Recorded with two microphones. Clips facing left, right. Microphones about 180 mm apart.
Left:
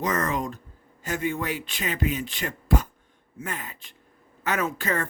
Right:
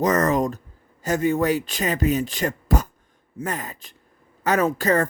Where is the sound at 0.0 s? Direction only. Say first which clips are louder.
Right 7 dB; 40° right (ahead or behind).